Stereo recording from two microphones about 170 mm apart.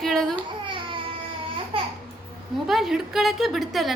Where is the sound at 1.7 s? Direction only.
30° right (ahead or behind).